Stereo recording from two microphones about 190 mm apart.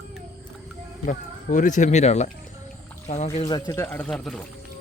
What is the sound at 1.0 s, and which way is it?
Speech, 40° left (ahead or behind).